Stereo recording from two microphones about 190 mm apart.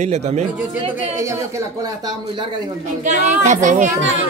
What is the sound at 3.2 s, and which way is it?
Speech, 40° right (ahead or behind).